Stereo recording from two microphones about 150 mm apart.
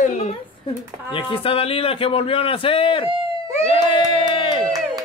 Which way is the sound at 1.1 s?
35° left (ahead or behind).